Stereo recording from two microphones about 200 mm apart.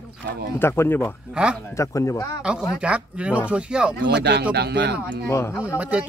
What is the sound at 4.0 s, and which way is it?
Speech, 60° right (ahead or behind).